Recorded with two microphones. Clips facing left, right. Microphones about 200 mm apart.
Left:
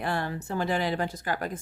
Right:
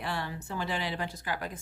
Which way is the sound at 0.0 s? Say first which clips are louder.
Left 5 dB; 50° left (ahead or behind).